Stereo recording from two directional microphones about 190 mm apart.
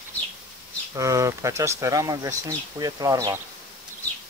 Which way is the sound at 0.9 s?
15° right (ahead or behind).